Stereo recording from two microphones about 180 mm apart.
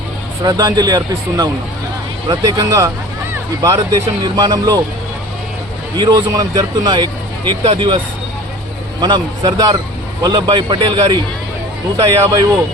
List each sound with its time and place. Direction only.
0.4 s speech: 20° right (ahead or behind)
6.0 s speech: 25° right (ahead or behind)
9.0 s a man's voice: 25° right (ahead or behind)